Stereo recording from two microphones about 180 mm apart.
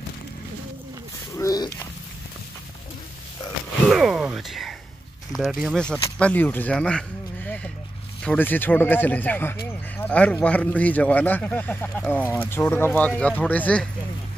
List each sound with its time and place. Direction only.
1.3 s speech: 20° left (ahead or behind)
3.9 s a man's voice: 5° right (ahead or behind)